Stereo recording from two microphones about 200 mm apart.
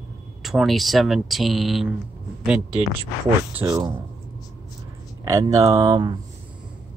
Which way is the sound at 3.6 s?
15° right (ahead or behind).